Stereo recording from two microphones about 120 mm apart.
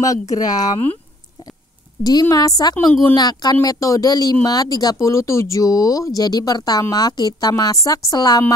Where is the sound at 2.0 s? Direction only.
30° left (ahead or behind).